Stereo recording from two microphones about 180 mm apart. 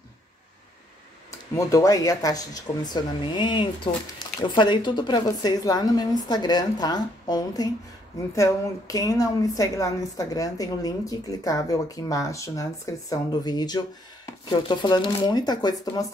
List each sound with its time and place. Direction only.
1.5 s a woman's voice: 15° left (ahead or behind)